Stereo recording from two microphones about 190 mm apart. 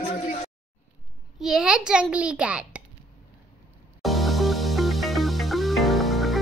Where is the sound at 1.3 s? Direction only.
Centre (ahead or behind).